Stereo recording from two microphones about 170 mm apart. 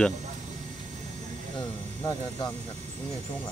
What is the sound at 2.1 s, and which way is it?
Speech, 20° left (ahead or behind).